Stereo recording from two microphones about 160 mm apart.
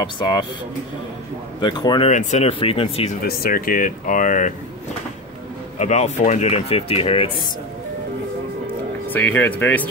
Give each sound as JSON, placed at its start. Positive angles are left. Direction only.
{"t": 1.6, "sound": "speech", "side_deg": 25}
{"t": 2.0, "sound": "speech", "side_deg": 45}
{"t": 3.2, "sound": "speech", "side_deg": 65}
{"t": 5.8, "sound": "speech", "side_deg": 45}
{"t": 9.1, "sound": "speech", "side_deg": 10}